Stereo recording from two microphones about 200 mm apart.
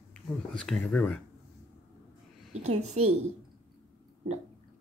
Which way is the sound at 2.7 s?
35° right (ahead or behind).